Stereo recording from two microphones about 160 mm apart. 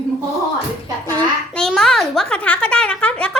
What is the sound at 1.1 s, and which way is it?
A child's voice, 5° left (ahead or behind).